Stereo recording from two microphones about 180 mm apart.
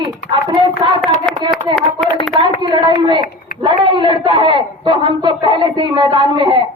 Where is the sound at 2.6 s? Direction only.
25° right (ahead or behind).